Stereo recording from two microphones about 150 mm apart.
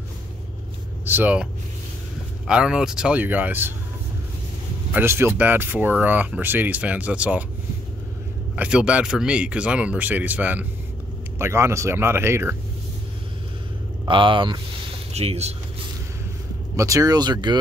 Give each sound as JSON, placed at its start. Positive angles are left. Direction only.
{"t": 1.0, "sound": "speech", "side_deg": -10}
{"t": 4.9, "sound": "speech", "side_deg": -15}
{"t": 8.5, "sound": "speech", "side_deg": -5}
{"t": 14.0, "sound": "speech", "side_deg": -35}
{"t": 15.1, "sound": "speech", "side_deg": -45}
{"t": 16.7, "sound": "speech", "side_deg": -20}